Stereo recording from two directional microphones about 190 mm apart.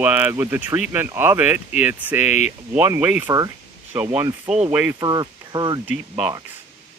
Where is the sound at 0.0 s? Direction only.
10° right (ahead or behind).